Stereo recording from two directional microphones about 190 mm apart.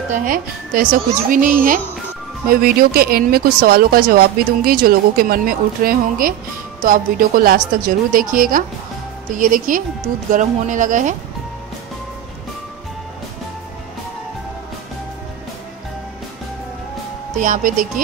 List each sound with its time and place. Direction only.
0.1 s speech: 45° right (ahead or behind)
17.4 s speech: 45° right (ahead or behind)